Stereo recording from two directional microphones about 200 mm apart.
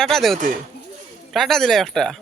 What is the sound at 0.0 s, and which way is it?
A man's voice, centre (ahead or behind).